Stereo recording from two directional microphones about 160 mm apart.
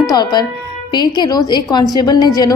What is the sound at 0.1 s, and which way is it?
A woman's voice, 25° left (ahead or behind).